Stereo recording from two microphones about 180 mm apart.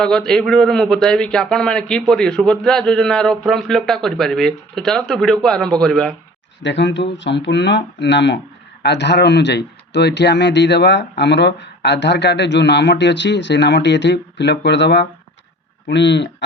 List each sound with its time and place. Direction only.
0.0 s a man's voice: 5° left (ahead or behind)
6.6 s speech: 85° left